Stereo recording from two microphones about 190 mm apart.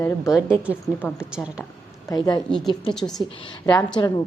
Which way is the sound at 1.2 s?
5° right (ahead or behind).